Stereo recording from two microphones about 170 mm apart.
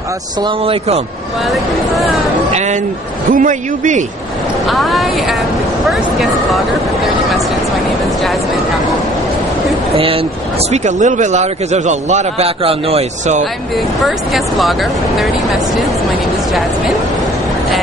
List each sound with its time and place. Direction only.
0.4 s speech: 35° right (ahead or behind)
1.5 s speech: centre (ahead or behind)
2.5 s a man's voice: 45° right (ahead or behind)
4.6 s speech: centre (ahead or behind)
9.9 s speech: 30° right (ahead or behind)
10.7 s a man's voice: 45° right (ahead or behind)
14.0 s speech: centre (ahead or behind)